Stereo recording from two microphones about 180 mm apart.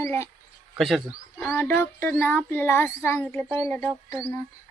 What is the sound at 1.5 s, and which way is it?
Speech, 10° left (ahead or behind).